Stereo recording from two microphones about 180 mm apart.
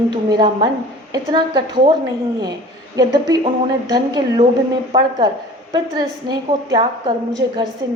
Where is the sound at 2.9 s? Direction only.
20° right (ahead or behind).